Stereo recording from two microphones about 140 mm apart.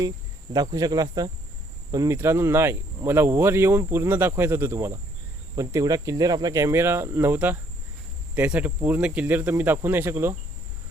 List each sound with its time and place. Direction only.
0.5 s speech: 30° right (ahead or behind)